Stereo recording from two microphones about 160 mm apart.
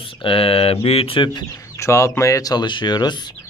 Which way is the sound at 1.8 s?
20° left (ahead or behind).